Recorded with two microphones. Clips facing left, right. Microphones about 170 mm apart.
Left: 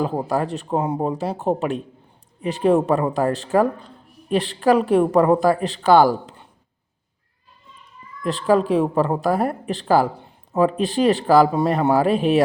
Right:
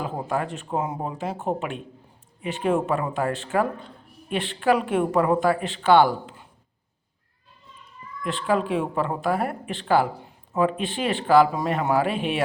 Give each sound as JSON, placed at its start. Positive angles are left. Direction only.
{"t": 0.0, "sound": "a man's voice", "side_deg": 35}
{"t": 8.2, "sound": "a man's voice", "side_deg": 35}